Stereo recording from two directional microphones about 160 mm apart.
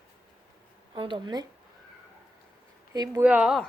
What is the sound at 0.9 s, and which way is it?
Speech, 30° right (ahead or behind).